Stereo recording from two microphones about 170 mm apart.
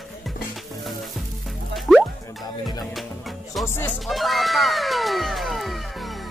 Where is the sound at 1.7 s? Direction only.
Centre (ahead or behind).